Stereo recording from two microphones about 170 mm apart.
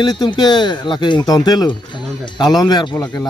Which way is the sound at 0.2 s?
25° left (ahead or behind).